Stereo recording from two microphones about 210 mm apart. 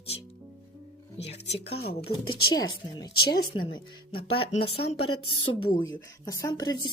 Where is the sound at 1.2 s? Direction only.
30° left (ahead or behind).